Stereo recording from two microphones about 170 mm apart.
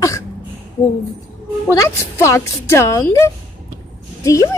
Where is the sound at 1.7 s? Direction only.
15° left (ahead or behind).